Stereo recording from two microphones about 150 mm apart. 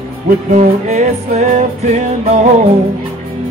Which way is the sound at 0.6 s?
50° right (ahead or behind).